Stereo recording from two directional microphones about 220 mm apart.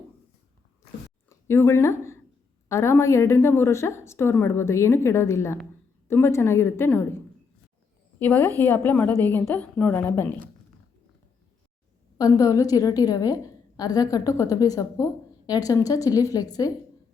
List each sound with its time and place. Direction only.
1.3 s a woman's voice: 10° left (ahead or behind)
8.2 s a woman's voice: 10° left (ahead or behind)
12.1 s a woman's voice: 15° left (ahead or behind)